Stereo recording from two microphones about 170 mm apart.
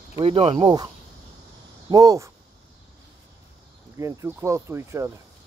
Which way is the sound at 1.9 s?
20° right (ahead or behind).